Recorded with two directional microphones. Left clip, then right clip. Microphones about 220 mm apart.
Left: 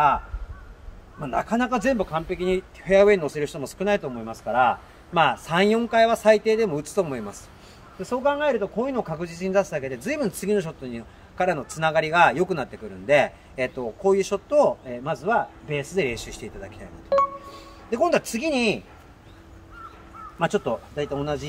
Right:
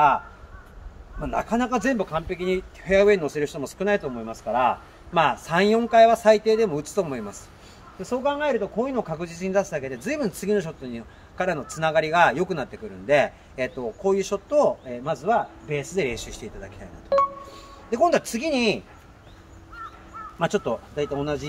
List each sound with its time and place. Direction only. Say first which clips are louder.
1.2 s speech: even; 20° left (ahead or behind)
17.1 s a sound: even; centre (ahead or behind)
17.8 s speech: right 1 dB; 10° left (ahead or behind)
20.3 s speech: left 1 dB; centre (ahead or behind)